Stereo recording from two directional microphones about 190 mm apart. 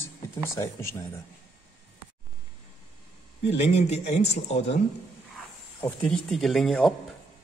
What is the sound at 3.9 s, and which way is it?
Speech, 35° left (ahead or behind).